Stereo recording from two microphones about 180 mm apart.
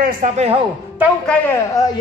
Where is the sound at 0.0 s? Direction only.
50° right (ahead or behind).